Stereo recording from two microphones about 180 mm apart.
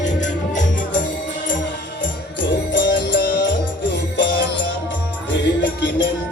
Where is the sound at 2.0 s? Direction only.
90° left.